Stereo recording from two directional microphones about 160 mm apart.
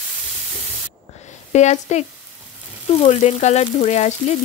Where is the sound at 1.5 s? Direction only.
45° left (ahead or behind).